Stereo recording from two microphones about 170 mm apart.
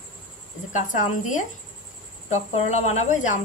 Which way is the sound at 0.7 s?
45° left (ahead or behind).